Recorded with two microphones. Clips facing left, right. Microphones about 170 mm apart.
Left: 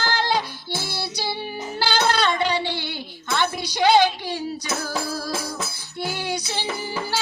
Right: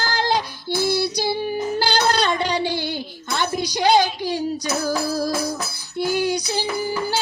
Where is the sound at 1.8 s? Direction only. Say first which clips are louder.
Left 1 dB; 45° right (ahead or behind).